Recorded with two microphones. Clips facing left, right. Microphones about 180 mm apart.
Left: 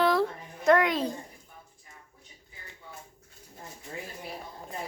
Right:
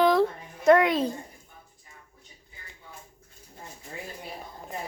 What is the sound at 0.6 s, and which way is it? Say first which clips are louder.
Speech: right 3 dB; 25° right (ahead or behind).